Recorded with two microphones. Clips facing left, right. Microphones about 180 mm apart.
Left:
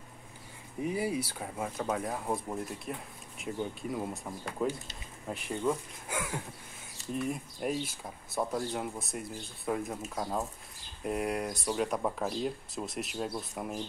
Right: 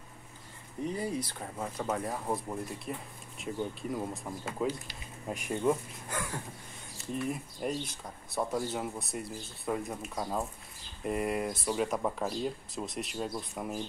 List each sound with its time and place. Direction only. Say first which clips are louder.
0.8 s speech: left 2 dB; 10° left (ahead or behind); by 5.8 s 10° right (ahead or behind)
6.0 s a sound: left 1 dB; 10° left (ahead or behind)
7.2 s speech: left 1 dB; centre (ahead or behind)